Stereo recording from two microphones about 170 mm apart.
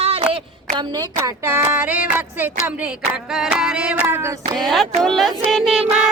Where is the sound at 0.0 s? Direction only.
35° right (ahead or behind).